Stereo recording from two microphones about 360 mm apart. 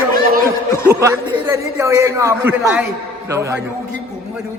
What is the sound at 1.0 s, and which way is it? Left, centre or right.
A man's voice, centre.